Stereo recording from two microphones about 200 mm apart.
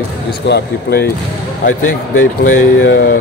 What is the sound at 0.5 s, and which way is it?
Speech, 50° left (ahead or behind).